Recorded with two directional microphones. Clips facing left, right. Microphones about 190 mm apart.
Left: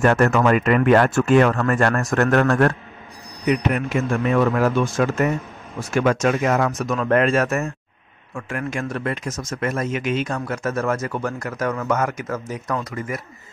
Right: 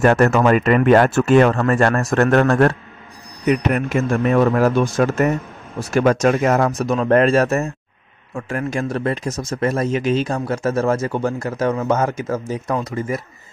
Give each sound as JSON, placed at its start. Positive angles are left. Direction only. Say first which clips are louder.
{"t": 0.0, "sound": "speech", "louder": "right 3 dB", "side_deg": -35}
{"t": 3.4, "sound": "speech", "louder": "right 2 dB", "side_deg": -45}